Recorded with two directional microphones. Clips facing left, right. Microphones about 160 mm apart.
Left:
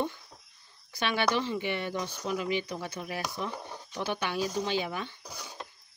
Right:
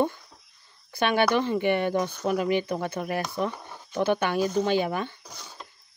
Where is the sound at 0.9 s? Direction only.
55° right (ahead or behind).